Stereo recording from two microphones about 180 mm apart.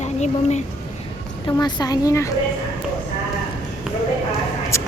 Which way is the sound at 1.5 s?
20° left (ahead or behind).